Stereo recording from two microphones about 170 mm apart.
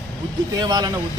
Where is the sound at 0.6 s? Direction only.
25° right (ahead or behind).